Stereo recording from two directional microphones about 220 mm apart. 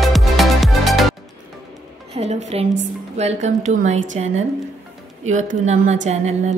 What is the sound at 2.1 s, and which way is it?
A woman's voice, 30° right (ahead or behind).